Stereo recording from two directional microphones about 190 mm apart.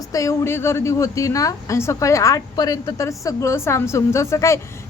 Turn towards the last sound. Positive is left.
turn(degrees=15)  # may be behind; listen again after turning